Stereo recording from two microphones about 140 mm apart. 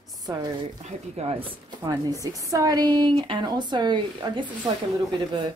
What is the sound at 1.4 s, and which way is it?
A woman's voice, 25° right (ahead or behind).